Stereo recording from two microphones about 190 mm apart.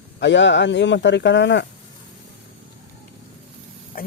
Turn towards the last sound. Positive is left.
turn(degrees=50)  # may be behind; listen again after turning